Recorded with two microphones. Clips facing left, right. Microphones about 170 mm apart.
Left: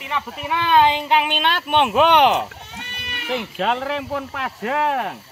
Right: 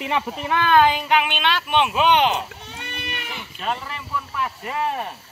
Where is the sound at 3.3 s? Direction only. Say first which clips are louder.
Left 8 dB; 90° left.